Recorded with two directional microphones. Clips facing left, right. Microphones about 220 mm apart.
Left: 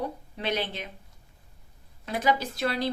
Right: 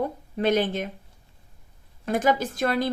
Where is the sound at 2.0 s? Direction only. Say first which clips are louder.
Right 4 dB; 50° right (ahead or behind).